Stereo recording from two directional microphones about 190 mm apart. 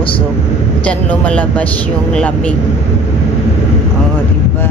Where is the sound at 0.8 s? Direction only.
5° left (ahead or behind).